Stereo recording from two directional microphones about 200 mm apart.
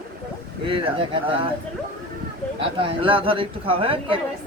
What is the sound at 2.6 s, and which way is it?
Speech, 25° right (ahead or behind).